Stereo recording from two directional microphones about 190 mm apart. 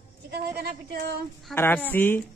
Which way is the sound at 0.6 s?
55° right (ahead or behind).